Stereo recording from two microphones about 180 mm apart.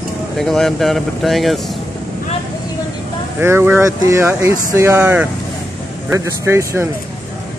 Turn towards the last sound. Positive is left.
turn(degrees=-15)  # may be behind; listen again after turning